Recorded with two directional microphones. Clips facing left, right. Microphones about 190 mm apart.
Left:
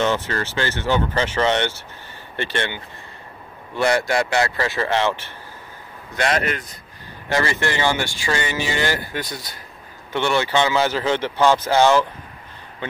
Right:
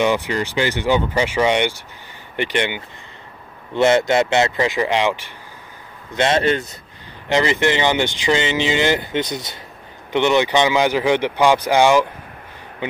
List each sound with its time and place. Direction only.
0.0 s speech: 15° right (ahead or behind)
6.1 s speech: 25° right (ahead or behind)